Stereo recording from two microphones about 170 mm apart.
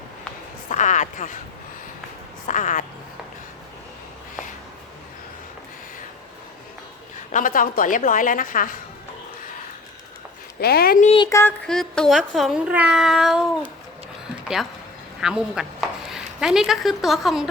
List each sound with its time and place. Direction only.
0.7 s speech: 45° left (ahead or behind)
2.5 s a woman's voice: 50° left (ahead or behind)
7.3 s a woman's voice: 50° left (ahead or behind)
10.6 s speech: 65° left (ahead or behind)
11.0 s speech: 35° left (ahead or behind)
11.3 s a sound: 15° left (ahead or behind)
11.6 s speech: 5° left (ahead or behind)